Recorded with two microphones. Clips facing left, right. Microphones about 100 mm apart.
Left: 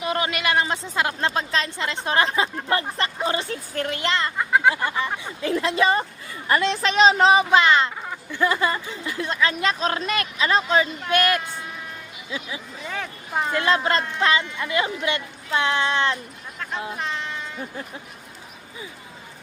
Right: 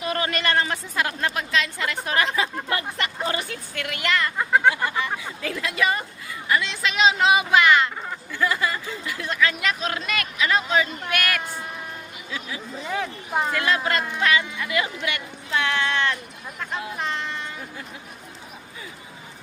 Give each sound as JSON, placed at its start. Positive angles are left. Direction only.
{"t": 0.0, "sound": "a woman's voice", "side_deg": 20}
{"t": 4.4, "sound": "a sound", "side_deg": 0}
{"t": 4.7, "sound": "a woman's voice", "side_deg": 30}
{"t": 12.9, "sound": "speech", "side_deg": -5}
{"t": 13.5, "sound": "speech", "side_deg": 25}
{"t": 17.0, "sound": "speech", "side_deg": 0}